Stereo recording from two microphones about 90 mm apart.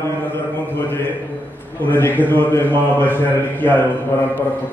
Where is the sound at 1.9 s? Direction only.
20° left (ahead or behind).